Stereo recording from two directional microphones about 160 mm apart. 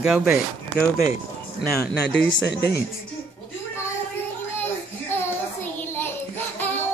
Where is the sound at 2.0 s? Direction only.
90° left.